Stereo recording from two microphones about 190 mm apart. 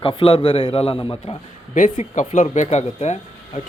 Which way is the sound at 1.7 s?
40° left (ahead or behind).